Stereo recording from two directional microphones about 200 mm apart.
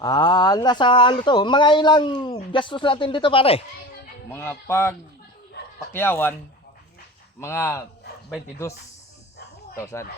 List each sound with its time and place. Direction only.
0.0 s speech: 20° left (ahead or behind)
4.3 s speech: 10° left (ahead or behind)
7.4 s speech: 10° left (ahead or behind)
9.7 s speech: 15° left (ahead or behind)